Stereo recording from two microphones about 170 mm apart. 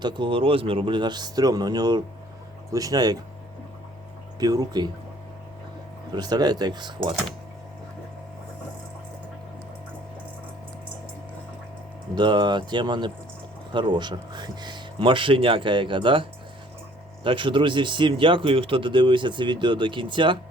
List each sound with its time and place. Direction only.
0.0 s a man's voice: 25° right (ahead or behind)
4.4 s a man's voice: 20° right (ahead or behind)
6.1 s a man's voice: 25° right (ahead or behind)
12.1 s a man's voice: 25° right (ahead or behind)
17.2 s a man's voice: 30° right (ahead or behind)